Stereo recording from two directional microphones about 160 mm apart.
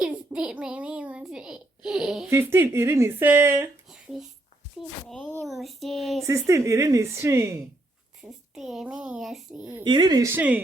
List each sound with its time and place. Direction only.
0.0 s a sound: 5° right (ahead or behind)
2.3 s speech: 15° right (ahead or behind)
3.8 s a sound: 5° right (ahead or behind)
5.0 s speech: 5° left (ahead or behind)
6.2 s speech: 20° right (ahead or behind)
8.2 s speech: centre (ahead or behind)
9.8 s speech: 25° right (ahead or behind); by 10.6 s 10° right (ahead or behind)